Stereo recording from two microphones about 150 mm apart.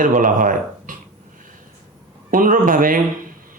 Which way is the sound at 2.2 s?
65° right (ahead or behind).